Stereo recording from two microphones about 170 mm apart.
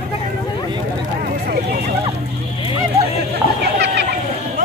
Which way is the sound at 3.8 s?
90° right.